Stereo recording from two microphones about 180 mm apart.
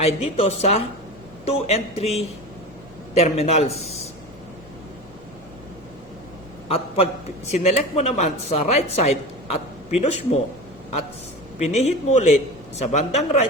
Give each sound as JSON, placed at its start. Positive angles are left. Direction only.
{"t": 0.0, "sound": "a woman's voice", "side_deg": 35}
{"t": 3.2, "sound": "a woman's voice", "side_deg": 35}
{"t": 6.7, "sound": "a woman's voice", "side_deg": 35}
{"t": 11.6, "sound": "a woman's voice", "side_deg": 40}